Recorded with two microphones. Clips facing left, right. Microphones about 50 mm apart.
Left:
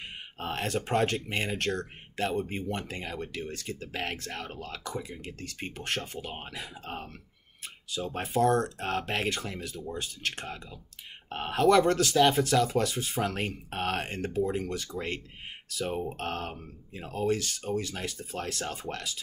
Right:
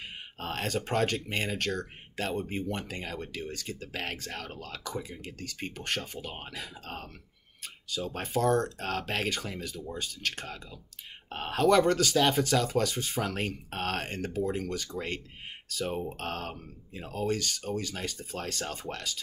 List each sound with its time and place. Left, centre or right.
0.4 s speech: centre